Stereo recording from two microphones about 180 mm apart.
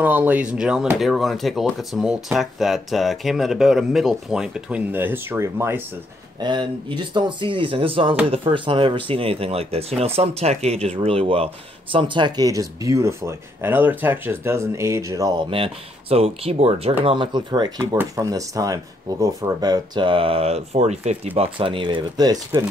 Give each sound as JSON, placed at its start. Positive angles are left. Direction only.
{"t": 0.0, "sound": "speech", "side_deg": -10}
{"t": 6.4, "sound": "speech", "side_deg": -25}